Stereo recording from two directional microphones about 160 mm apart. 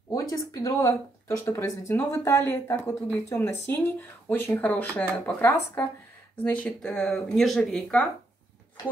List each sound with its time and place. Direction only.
0.1 s speech: 20° left (ahead or behind); by 8.1 s 5° left (ahead or behind)